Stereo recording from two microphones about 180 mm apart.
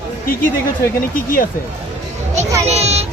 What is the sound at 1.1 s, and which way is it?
Speech, 50° left (ahead or behind).